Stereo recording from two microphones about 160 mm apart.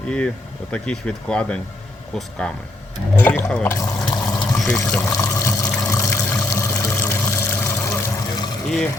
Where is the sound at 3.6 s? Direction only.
20° left (ahead or behind).